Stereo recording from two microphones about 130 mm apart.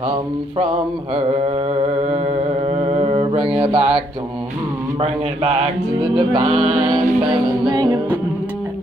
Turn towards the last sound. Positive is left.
turn(degrees=-30)  # may be behind; listen again after turning